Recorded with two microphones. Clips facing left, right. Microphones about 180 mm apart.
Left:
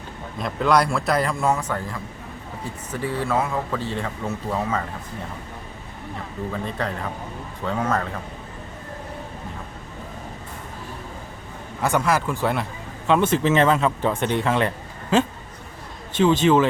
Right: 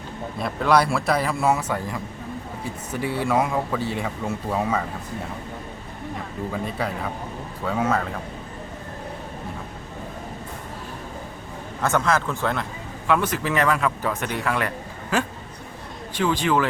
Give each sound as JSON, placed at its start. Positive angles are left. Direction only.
{"t": 0.3, "sound": "a man's voice", "side_deg": -5}
{"t": 6.5, "sound": "speech", "side_deg": -10}
{"t": 11.8, "sound": "speech", "side_deg": 10}
{"t": 13.1, "sound": "a man's voice", "side_deg": 25}
{"t": 16.1, "sound": "a man's voice", "side_deg": 20}